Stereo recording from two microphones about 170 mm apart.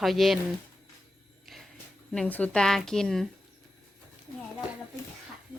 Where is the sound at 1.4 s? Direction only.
Centre (ahead or behind).